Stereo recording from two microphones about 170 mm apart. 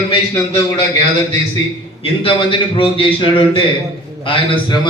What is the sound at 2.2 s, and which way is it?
A man's voice, 30° left (ahead or behind).